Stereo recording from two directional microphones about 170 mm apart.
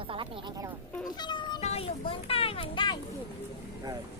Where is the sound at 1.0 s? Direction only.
25° left (ahead or behind).